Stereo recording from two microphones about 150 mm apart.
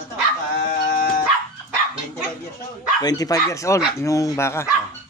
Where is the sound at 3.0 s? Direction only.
25° left (ahead or behind).